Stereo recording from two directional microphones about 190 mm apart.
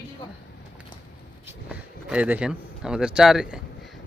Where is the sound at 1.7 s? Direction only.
5° right (ahead or behind).